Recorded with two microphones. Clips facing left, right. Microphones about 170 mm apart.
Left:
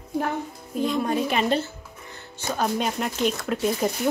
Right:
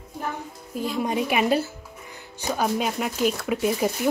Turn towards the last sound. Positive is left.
turn(degrees=-5)  # may be behind; listen again after turning